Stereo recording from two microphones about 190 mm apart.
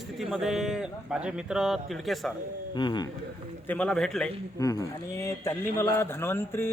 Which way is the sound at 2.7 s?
25° left (ahead or behind).